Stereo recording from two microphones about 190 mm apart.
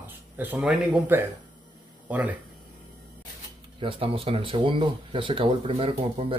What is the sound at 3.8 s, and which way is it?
Speech, 30° right (ahead or behind).